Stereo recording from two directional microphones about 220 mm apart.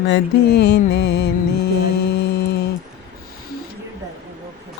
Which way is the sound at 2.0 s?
50° left (ahead or behind).